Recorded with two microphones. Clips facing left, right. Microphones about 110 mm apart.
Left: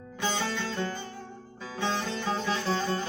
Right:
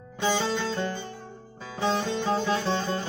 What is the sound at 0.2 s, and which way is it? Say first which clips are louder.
Music: right 5 dB; 25° right (ahead or behind).